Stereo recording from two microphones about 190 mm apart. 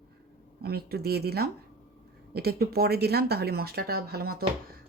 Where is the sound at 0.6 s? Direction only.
55° right (ahead or behind).